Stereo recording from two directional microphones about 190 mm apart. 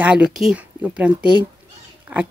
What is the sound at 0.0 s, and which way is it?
Speech, 5° right (ahead or behind).